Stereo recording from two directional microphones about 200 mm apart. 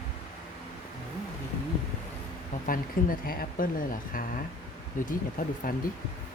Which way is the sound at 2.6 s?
45° left (ahead or behind).